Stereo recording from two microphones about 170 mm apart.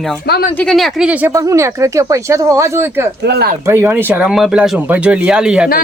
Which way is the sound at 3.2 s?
75° right (ahead or behind).